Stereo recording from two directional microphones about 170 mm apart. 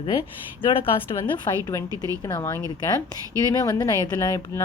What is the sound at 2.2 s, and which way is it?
Speech, 20° left (ahead or behind).